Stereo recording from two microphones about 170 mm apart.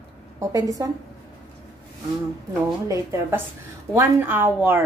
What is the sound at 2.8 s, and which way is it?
A woman's voice, 20° right (ahead or behind).